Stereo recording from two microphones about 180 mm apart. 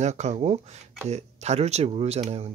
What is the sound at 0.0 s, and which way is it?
Speech, 40° right (ahead or behind).